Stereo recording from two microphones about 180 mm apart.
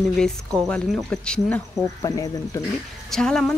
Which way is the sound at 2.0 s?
20° left (ahead or behind).